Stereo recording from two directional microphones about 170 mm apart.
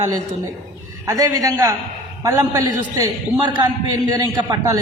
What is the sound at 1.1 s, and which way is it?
A man's voice, 20° right (ahead or behind).